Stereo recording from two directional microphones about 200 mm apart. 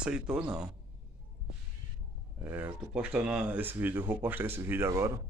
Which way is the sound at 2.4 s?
10° right (ahead or behind).